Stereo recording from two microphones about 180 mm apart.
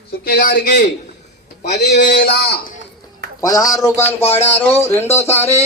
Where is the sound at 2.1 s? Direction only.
60° left (ahead or behind).